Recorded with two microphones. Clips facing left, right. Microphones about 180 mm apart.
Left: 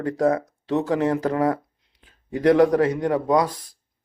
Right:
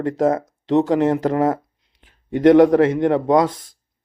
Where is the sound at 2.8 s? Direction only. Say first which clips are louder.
Right 5 dB; 25° right (ahead or behind).